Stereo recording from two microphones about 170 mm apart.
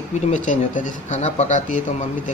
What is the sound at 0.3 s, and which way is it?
Speech, 50° left (ahead or behind).